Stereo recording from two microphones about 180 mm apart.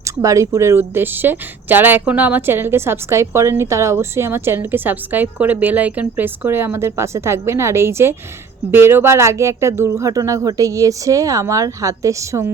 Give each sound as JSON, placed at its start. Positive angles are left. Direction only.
{"t": 0.0, "sound": "speech", "side_deg": -15}